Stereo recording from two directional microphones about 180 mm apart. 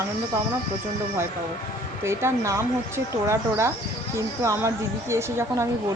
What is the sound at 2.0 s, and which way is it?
Speech, 15° right (ahead or behind).